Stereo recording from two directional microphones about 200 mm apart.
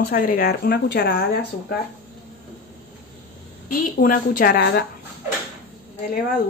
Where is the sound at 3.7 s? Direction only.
40° left (ahead or behind).